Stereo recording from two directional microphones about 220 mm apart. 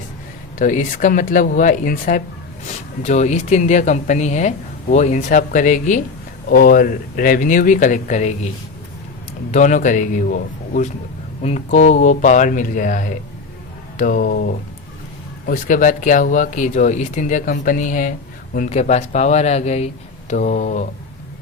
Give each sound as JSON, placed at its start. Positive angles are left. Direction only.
{"t": 0.6, "sound": "speech", "side_deg": 35}
{"t": 9.5, "sound": "speech", "side_deg": 35}